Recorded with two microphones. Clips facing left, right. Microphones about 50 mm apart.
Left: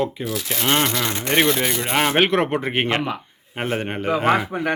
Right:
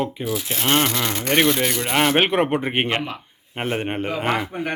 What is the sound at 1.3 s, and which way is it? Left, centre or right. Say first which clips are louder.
Speech: even; centre.